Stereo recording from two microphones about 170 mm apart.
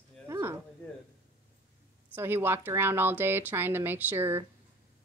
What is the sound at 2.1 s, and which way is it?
Speech, 15° right (ahead or behind).